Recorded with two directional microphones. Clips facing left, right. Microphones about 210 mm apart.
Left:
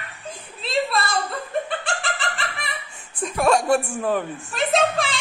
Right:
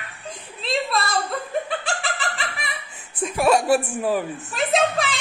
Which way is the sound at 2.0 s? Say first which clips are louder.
Even; centre (ahead or behind).